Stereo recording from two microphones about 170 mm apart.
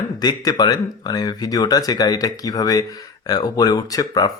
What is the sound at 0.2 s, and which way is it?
Speech, 25° left (ahead or behind).